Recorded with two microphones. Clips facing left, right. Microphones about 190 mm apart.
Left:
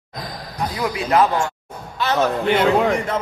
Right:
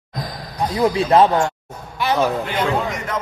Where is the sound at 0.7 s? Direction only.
30° right (ahead or behind).